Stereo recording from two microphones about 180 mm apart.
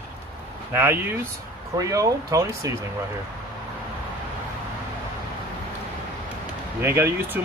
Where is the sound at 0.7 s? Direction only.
10° right (ahead or behind).